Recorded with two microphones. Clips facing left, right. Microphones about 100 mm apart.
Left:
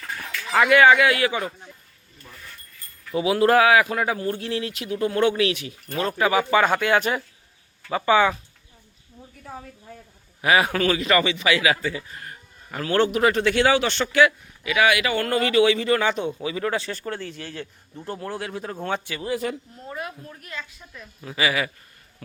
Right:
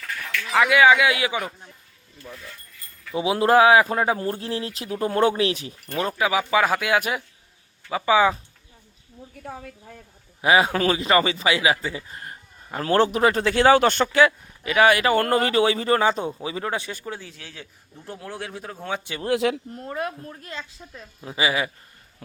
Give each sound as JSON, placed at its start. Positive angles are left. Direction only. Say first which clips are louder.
{"t": 0.4, "sound": "speech", "louder": "left 1 dB", "side_deg": 0}
{"t": 3.2, "sound": "a man's voice", "louder": "even", "side_deg": -25}
{"t": 6.1, "sound": "a man's voice", "louder": "left 3 dB", "side_deg": -5}
{"t": 10.4, "sound": "a man's voice", "louder": "right 1 dB", "side_deg": -25}
{"t": 19.2, "sound": "a man's voice", "louder": "right 4 dB", "side_deg": -80}
{"t": 19.8, "sound": "speech", "louder": "right 6 dB", "side_deg": -45}
{"t": 20.3, "sound": "a woman's voice", "louder": "right 1 dB", "side_deg": -30}